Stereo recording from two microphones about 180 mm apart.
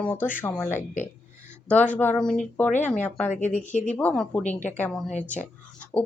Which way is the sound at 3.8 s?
10° left (ahead or behind).